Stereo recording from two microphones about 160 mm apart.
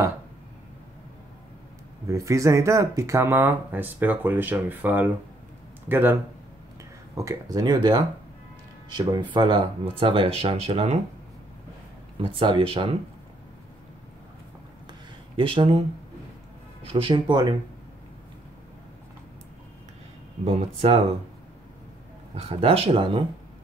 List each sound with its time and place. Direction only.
2.0 s speech: 20° right (ahead or behind)
7.2 s speech: 20° right (ahead or behind); by 11.0 s 40° right (ahead or behind)
12.2 s speech: 30° right (ahead or behind)
14.9 s a sound: 35° right (ahead or behind)
16.8 s speech: 35° right (ahead or behind)
20.4 s speech: 40° right (ahead or behind)
22.3 s speech: 40° right (ahead or behind)